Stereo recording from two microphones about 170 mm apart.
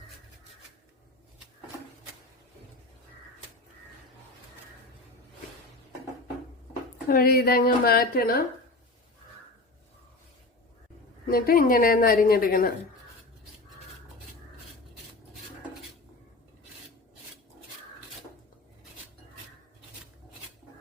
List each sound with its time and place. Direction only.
7.1 s a woman's voice: 60° left (ahead or behind)
11.3 s a woman's voice: 60° left (ahead or behind)